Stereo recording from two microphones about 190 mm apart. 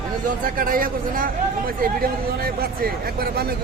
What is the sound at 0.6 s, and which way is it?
Speech, 50° right (ahead or behind).